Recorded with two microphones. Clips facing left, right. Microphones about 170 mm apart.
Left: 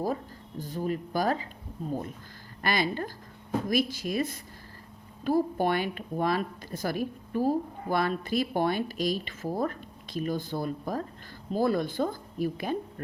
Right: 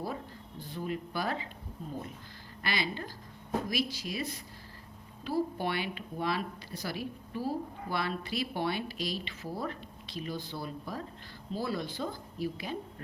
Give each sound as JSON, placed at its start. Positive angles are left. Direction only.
{"t": 0.6, "sound": "speech", "side_deg": 40}
{"t": 2.6, "sound": "a woman's voice", "side_deg": 45}